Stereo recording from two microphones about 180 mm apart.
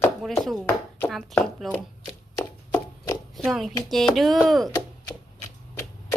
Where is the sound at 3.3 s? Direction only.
Centre (ahead or behind).